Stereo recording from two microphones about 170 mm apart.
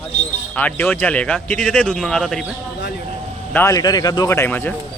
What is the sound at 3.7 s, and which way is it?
Speech, 25° left (ahead or behind).